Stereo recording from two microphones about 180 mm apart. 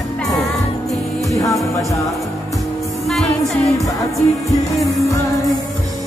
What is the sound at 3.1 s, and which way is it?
Music, centre (ahead or behind).